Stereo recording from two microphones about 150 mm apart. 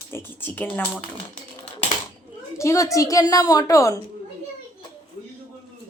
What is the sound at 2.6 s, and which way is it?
A woman's voice, 20° left (ahead or behind).